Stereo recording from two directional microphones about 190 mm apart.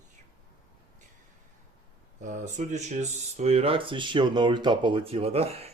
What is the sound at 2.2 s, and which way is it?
Speech, 40° right (ahead or behind).